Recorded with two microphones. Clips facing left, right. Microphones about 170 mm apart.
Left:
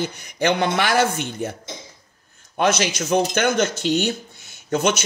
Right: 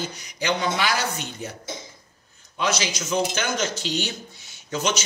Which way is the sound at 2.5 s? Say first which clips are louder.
Left 6 dB; 55° left (ahead or behind).